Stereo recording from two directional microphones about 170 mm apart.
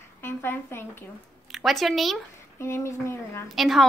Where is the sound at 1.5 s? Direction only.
Centre (ahead or behind).